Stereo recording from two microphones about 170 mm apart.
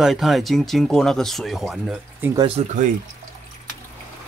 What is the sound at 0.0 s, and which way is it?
Speech, centre (ahead or behind).